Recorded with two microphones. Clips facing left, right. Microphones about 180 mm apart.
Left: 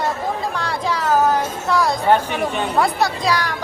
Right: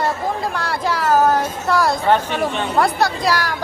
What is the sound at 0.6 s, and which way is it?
Speech, 5° right (ahead or behind).